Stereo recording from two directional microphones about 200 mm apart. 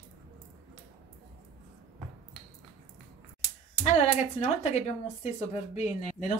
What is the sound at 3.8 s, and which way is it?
A woman's voice, 30° left (ahead or behind).